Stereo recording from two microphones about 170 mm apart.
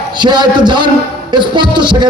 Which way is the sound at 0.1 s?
25° right (ahead or behind).